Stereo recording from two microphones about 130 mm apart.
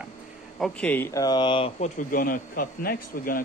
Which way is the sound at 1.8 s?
90° left.